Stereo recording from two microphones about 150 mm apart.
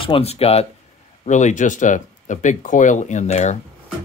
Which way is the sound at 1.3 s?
50° left (ahead or behind).